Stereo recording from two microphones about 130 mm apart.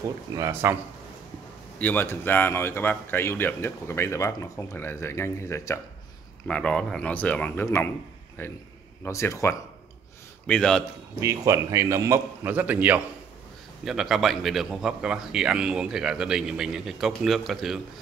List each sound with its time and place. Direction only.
0.4 s a man's voice: 20° right (ahead or behind)
1.8 s speech: 15° left (ahead or behind)
6.4 s speech: 10° left (ahead or behind)
10.4 s speech: 5° left (ahead or behind)
11.1 s a man's voice: 25° right (ahead or behind); by 17.7 s centre (ahead or behind)